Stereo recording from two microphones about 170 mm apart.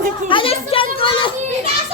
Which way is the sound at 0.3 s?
30° left (ahead or behind).